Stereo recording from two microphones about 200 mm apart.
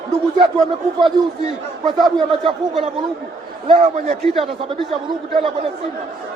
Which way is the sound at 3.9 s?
35° right (ahead or behind).